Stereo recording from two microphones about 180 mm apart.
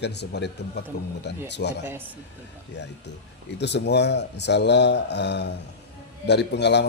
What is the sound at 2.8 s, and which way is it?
Speech, 75° left (ahead or behind).